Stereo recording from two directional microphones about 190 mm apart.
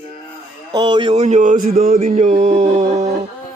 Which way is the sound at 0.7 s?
25° right (ahead or behind).